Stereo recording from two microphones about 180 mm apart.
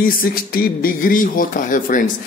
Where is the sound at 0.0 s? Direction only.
55° left (ahead or behind).